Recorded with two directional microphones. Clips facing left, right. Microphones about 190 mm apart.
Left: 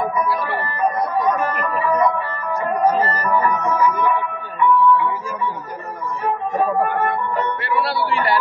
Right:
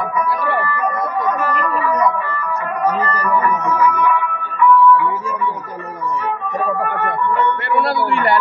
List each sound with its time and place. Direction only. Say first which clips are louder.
0.6 s music: right 4 dB; 30° left (ahead or behind)
3.0 s music: right 1 dB; 30° left (ahead or behind)
7.0 s music: right 2 dB; 35° left (ahead or behind)